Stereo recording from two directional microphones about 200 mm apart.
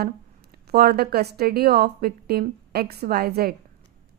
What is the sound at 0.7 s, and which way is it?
Speech, 50° right (ahead or behind).